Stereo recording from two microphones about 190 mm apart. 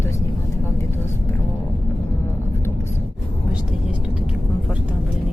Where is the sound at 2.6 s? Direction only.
15° left (ahead or behind).